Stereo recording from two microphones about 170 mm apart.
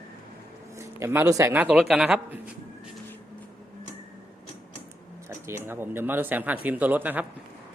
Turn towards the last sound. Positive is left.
turn(degrees=-10)  # may be behind; listen again after turning